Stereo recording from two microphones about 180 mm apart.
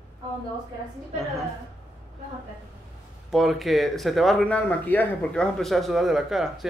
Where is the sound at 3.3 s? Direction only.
Centre (ahead or behind).